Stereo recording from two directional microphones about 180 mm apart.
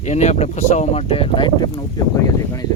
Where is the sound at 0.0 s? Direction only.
40° left (ahead or behind); by 1.8 s 25° left (ahead or behind).